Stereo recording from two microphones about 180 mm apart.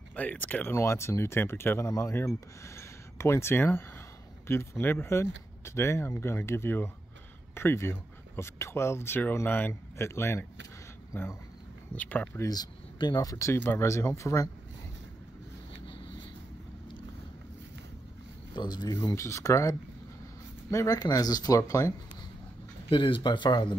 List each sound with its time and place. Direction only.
0.1 s speech: 10° left (ahead or behind)
11.9 s speech: 10° left (ahead or behind)
12.4 s speech: 20° left (ahead or behind)
18.5 s speech: 25° left (ahead or behind)
22.8 s speech: 30° left (ahead or behind)